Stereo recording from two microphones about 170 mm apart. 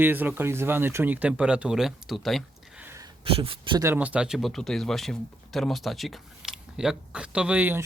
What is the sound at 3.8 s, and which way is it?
Speech, 10° right (ahead or behind).